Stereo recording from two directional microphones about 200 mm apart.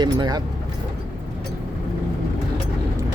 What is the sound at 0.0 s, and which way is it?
Speech, 20° right (ahead or behind).